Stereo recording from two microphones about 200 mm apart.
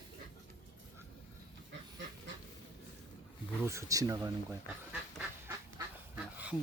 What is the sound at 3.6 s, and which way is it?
Speech, 15° right (ahead or behind).